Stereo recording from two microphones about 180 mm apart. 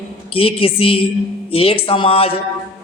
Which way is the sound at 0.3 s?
30° left (ahead or behind).